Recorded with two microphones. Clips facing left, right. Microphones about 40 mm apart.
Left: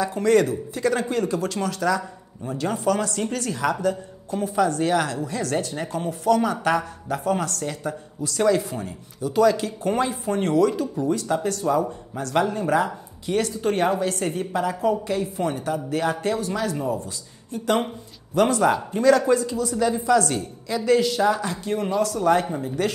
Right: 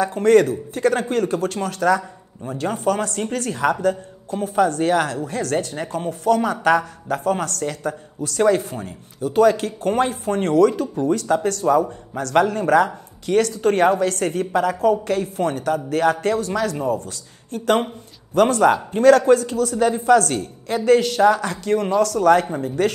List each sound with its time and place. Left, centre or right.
0.0 s a woman's voice: right